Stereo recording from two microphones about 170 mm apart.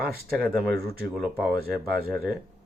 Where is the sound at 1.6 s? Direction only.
65° right (ahead or behind).